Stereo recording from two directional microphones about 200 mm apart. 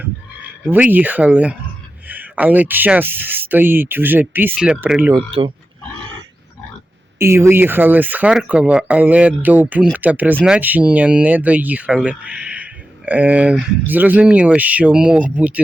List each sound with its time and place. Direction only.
0.7 s speech: 10° right (ahead or behind)
5.1 s speech: 25° right (ahead or behind)
7.2 s speech: 15° right (ahead or behind)